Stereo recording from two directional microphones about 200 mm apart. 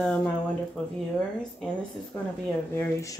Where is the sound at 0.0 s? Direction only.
5° left (ahead or behind).